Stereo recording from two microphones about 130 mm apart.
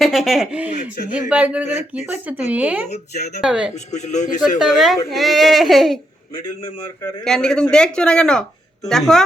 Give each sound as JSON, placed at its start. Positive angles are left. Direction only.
{"t": 0.0, "sound": "speech", "side_deg": 0}
{"t": 2.9, "sound": "speech", "side_deg": 60}
{"t": 3.4, "sound": "speech", "side_deg": -5}
{"t": 3.9, "sound": "speech", "side_deg": 65}
{"t": 4.5, "sound": "speech", "side_deg": 0}
{"t": 7.3, "sound": "speech", "side_deg": 5}